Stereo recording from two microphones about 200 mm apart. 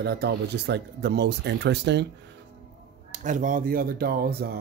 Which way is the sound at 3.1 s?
40° right (ahead or behind).